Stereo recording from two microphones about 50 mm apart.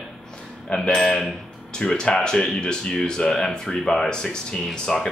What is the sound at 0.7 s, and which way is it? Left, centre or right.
Speech, centre.